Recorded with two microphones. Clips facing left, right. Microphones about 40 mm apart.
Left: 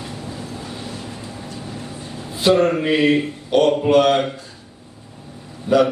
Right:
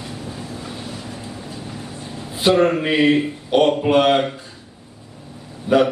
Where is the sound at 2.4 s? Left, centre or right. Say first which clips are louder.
Even; centre.